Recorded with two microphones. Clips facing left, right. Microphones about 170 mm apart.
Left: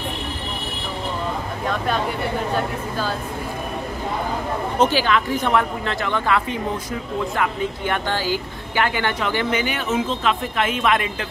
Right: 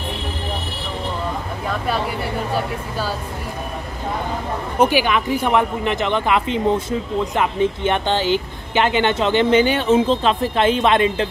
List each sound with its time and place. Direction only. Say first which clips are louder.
2.5 s a woman's voice: even; 5° right (ahead or behind)
4.7 s speech: right 2 dB; 15° right (ahead or behind)